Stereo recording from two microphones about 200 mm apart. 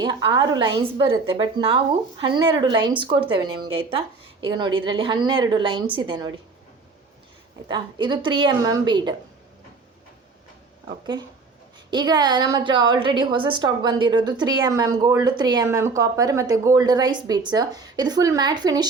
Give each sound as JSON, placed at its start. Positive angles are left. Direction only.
{"t": 0.0, "sound": "speech", "side_deg": -20}
{"t": 7.7, "sound": "speech", "side_deg": -20}
{"t": 11.0, "sound": "speech", "side_deg": -20}